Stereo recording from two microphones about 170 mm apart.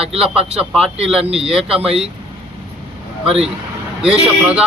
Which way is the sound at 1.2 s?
35° right (ahead or behind).